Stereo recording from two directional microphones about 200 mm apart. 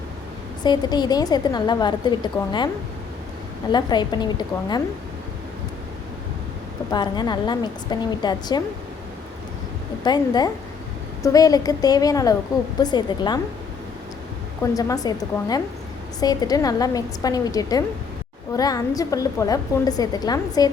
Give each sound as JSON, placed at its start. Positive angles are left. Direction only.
{"t": 0.6, "sound": "a woman's voice", "side_deg": 20}
{"t": 3.7, "sound": "a woman's voice", "side_deg": 20}
{"t": 6.9, "sound": "a woman's voice", "side_deg": 20}
{"t": 10.0, "sound": "a woman's voice", "side_deg": 20}
{"t": 14.6, "sound": "a woman's voice", "side_deg": 15}